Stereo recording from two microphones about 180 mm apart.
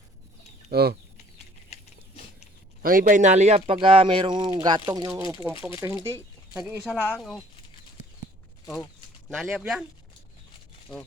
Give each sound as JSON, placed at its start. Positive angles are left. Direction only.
{"t": 0.7, "sound": "speech", "side_deg": -60}
{"t": 2.8, "sound": "speech", "side_deg": -50}
{"t": 9.3, "sound": "speech", "side_deg": 0}